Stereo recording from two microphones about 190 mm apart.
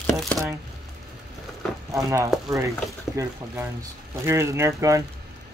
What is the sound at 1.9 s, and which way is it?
Speech, 15° right (ahead or behind).